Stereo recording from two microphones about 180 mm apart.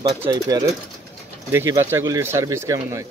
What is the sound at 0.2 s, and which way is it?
Speech, 20° right (ahead or behind).